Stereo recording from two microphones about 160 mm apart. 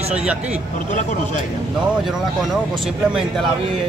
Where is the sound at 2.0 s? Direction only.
Centre (ahead or behind).